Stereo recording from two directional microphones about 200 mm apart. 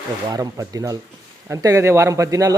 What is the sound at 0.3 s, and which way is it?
Speech, 20° right (ahead or behind).